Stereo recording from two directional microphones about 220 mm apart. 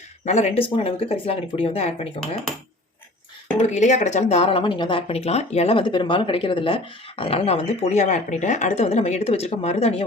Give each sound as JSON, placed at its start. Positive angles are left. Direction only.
{"t": 0.3, "sound": "speech", "side_deg": 30}
{"t": 3.8, "sound": "speech", "side_deg": 35}